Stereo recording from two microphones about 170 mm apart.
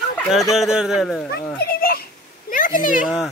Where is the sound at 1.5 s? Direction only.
65° left (ahead or behind).